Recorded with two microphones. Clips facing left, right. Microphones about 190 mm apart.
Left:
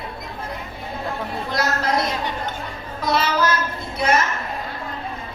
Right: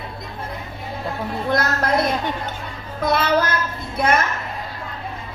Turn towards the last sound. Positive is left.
turn(degrees=-55)  # may be behind; listen again after turning